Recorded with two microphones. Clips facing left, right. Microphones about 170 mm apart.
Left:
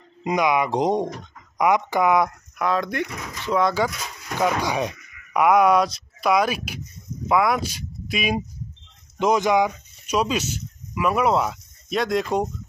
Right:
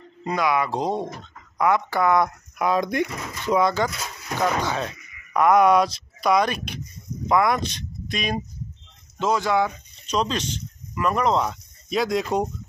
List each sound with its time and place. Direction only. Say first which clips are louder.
0.2 s speech: left 2 dB; 15° left (ahead or behind)
2.6 s speech: right 2 dB; 15° right (ahead or behind)
3.6 s speech: left 1 dB; 5° left (ahead or behind)
9.2 s speech: left 3 dB; 20° left (ahead or behind); by 12.4 s centre (ahead or behind)